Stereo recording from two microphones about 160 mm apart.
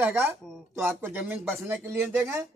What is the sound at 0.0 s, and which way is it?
A man's voice, 10° right (ahead or behind).